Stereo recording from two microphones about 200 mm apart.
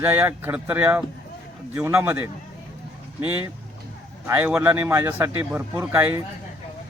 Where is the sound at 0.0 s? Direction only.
10° right (ahead or behind).